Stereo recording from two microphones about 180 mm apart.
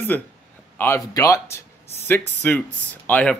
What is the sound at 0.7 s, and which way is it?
Speech, 15° left (ahead or behind).